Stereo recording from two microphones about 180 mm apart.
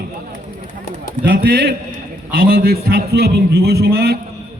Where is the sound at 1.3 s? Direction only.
65° right (ahead or behind).